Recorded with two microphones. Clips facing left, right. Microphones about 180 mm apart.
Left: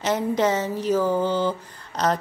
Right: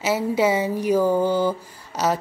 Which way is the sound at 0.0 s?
10° right (ahead or behind).